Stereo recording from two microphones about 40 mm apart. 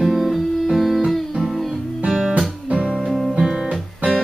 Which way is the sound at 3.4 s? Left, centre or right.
Centre.